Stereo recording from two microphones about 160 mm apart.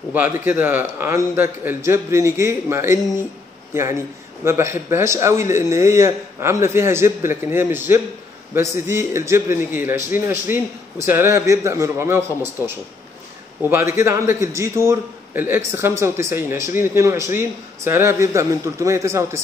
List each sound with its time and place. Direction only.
0.1 s speech: 10° right (ahead or behind)
13.7 s speech: 15° right (ahead or behind)